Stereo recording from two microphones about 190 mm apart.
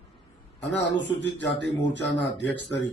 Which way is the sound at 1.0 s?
70° left (ahead or behind).